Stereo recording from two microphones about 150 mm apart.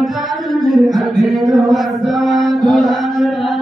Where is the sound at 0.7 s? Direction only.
Centre (ahead or behind).